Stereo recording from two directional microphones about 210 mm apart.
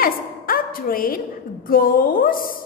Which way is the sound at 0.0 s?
45° left (ahead or behind).